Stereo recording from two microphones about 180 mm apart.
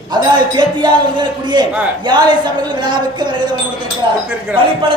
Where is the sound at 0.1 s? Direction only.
25° right (ahead or behind).